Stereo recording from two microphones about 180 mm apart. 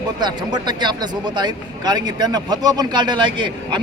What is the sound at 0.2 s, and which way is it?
Speech, 25° right (ahead or behind).